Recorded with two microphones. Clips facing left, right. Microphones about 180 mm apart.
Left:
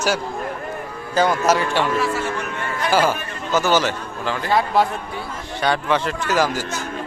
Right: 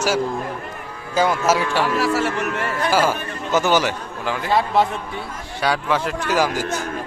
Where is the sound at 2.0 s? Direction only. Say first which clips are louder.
Right 3 dB; 80° right.